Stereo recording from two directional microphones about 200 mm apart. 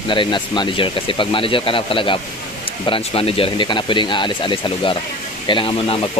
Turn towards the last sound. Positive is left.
turn(degrees=25)  # may be behind; listen again after turning